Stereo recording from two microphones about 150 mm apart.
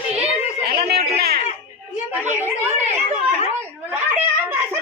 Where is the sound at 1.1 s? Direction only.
90° right.